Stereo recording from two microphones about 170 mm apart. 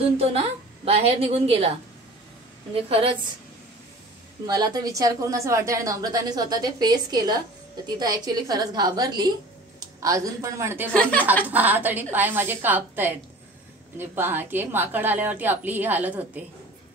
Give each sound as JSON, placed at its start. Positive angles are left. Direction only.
{"t": 0.0, "sound": "a woman's voice", "side_deg": -35}
{"t": 2.7, "sound": "a woman's voice", "side_deg": -30}
{"t": 4.5, "sound": "a woman's voice", "side_deg": -25}
{"t": 10.9, "sound": "speech", "side_deg": 5}
{"t": 11.4, "sound": "a woman's voice", "side_deg": -10}